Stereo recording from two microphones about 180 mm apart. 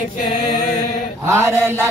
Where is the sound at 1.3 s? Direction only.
15° right (ahead or behind).